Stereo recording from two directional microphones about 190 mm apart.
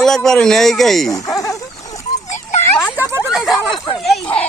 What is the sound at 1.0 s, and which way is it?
Speech, 20° left (ahead or behind).